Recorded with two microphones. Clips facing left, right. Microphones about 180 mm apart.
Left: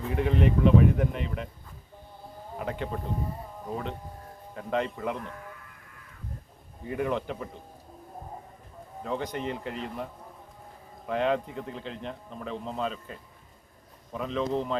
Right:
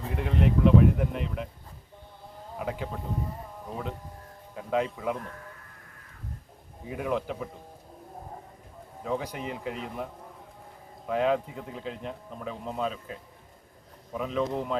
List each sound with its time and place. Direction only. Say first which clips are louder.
0.1 s speech: left 2 dB; centre (ahead or behind)
2.6 s speech: left 1 dB; centre (ahead or behind)
4.5 s speech: right 1 dB; 5° right (ahead or behind)
6.8 s speech: left 1 dB; centre (ahead or behind)
9.0 s speech: even; 5° right (ahead or behind)